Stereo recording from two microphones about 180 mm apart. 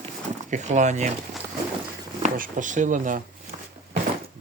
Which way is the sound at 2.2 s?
45° right (ahead or behind).